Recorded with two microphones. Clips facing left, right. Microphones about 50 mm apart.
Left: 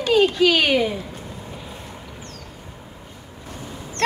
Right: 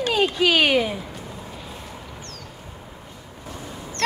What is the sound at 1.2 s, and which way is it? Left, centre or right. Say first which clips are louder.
Vehicle: left 1 dB; centre.